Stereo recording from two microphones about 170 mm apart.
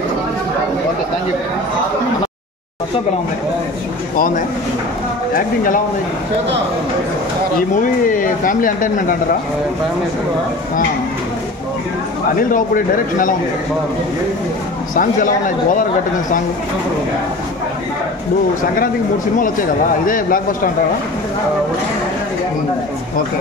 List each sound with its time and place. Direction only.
5.3 s a man's voice: 55° left (ahead or behind)
7.7 s speech: 50° left (ahead or behind)
12.4 s a man's voice: 55° left (ahead or behind)
15.0 s speech: 50° left (ahead or behind)
20.1 s a man's voice: 55° left (ahead or behind)